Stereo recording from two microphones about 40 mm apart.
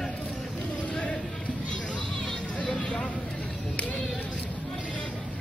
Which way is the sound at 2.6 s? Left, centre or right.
Left.